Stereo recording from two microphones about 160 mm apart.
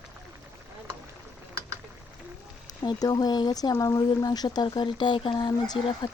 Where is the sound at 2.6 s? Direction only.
25° left (ahead or behind).